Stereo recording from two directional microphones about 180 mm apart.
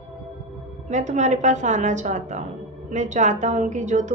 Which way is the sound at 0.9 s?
40° right (ahead or behind).